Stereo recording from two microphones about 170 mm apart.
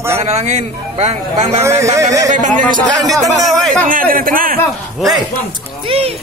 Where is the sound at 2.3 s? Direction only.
45° right (ahead or behind).